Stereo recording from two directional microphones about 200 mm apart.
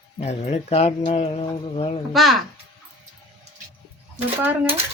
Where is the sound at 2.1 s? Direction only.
Centre (ahead or behind).